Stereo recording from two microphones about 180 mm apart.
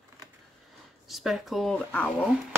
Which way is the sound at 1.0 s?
Centre (ahead or behind).